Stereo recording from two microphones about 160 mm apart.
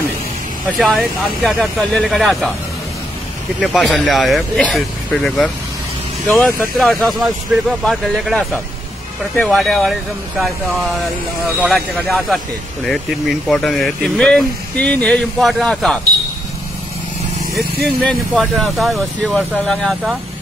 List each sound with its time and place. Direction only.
0.7 s speech: 5° left (ahead or behind)
3.6 s speech: centre (ahead or behind)
6.8 s speech: centre (ahead or behind)
11.6 s speech: centre (ahead or behind)
17.8 s speech: centre (ahead or behind)